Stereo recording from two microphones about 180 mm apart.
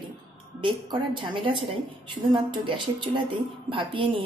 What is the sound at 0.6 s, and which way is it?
A woman's voice, 25° right (ahead or behind).